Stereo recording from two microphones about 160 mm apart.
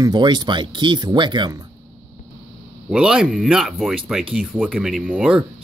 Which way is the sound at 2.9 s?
5° right (ahead or behind).